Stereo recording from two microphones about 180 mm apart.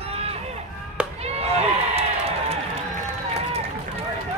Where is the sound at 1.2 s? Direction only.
35° right (ahead or behind).